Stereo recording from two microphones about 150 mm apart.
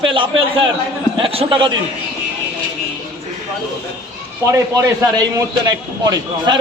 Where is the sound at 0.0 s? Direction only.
35° right (ahead or behind).